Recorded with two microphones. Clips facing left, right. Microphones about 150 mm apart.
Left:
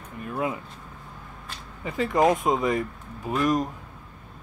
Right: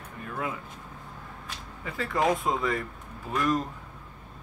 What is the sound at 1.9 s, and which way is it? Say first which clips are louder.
Speech: left 5 dB; 20° left (ahead or behind).